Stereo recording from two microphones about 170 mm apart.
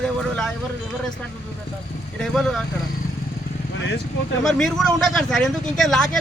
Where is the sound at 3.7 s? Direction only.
90° left.